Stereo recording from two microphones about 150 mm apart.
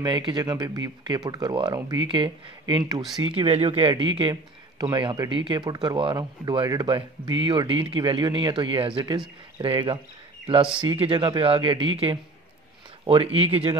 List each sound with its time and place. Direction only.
0.0 s speech: 30° right (ahead or behind)